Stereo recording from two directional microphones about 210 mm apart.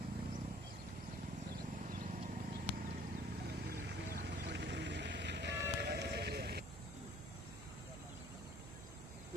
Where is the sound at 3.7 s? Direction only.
50° right (ahead or behind).